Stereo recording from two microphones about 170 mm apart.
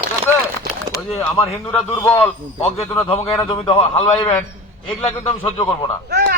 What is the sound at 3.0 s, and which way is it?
A man's voice, 35° left (ahead or behind).